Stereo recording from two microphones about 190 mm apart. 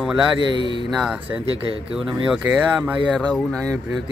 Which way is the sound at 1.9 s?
5° right (ahead or behind).